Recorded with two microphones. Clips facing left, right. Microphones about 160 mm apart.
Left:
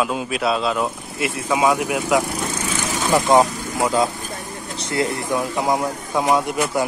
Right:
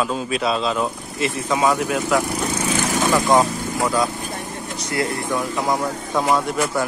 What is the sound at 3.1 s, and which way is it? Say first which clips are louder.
Speech: left 3 dB; 20° left (ahead or behind).